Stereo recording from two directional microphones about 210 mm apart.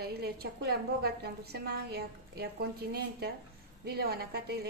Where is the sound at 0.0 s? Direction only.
50° right (ahead or behind).